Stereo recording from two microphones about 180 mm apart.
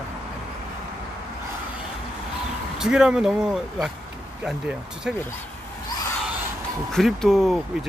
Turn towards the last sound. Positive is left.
turn(degrees=0)  # may be behind; listen again after turning